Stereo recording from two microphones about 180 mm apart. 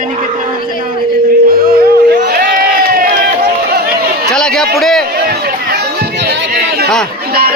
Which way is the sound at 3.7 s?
60° right (ahead or behind).